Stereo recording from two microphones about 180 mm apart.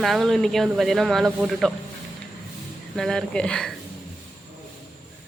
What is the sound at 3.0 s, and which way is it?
Speech, 5° left (ahead or behind).